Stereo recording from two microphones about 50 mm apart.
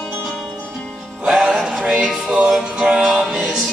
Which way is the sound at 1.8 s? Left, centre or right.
Centre.